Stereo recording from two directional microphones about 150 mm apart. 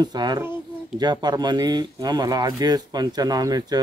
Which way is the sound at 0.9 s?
25° right (ahead or behind).